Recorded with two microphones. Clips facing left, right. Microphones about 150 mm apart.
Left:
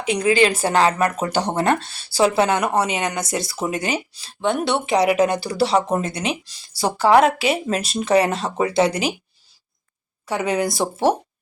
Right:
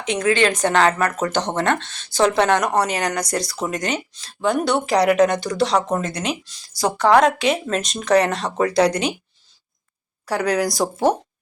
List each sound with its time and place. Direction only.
0.0 s speech: 10° left (ahead or behind)
10.2 s speech: centre (ahead or behind)